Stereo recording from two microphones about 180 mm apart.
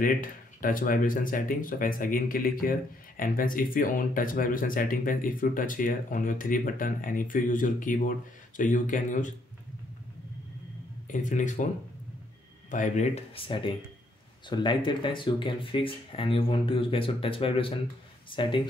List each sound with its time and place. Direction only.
0.0 s speech: 50° left (ahead or behind)
11.1 s speech: 45° left (ahead or behind)
12.7 s speech: 45° left (ahead or behind); by 18.6 s 25° left (ahead or behind)